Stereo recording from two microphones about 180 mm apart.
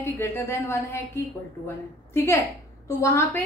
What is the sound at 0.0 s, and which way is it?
A woman's voice, 15° left (ahead or behind).